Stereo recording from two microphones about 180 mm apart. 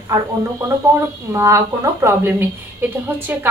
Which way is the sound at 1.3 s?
15° right (ahead or behind).